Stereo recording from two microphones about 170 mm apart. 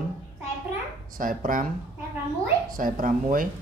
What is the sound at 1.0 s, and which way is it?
Speech, 55° right (ahead or behind).